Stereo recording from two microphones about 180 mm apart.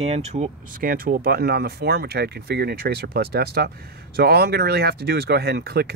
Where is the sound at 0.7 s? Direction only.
55° right (ahead or behind).